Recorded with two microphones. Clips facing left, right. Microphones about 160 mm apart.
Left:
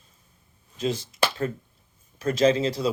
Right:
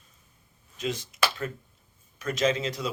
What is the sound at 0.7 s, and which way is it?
Speech, 30° left (ahead or behind).